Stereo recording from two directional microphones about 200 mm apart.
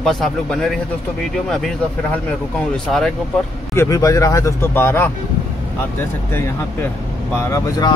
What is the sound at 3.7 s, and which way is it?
Speech, 15° left (ahead or behind).